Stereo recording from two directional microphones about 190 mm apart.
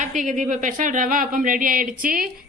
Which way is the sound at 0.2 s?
40° right (ahead or behind).